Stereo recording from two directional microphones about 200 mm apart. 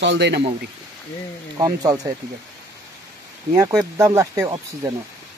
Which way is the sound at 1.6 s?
15° right (ahead or behind).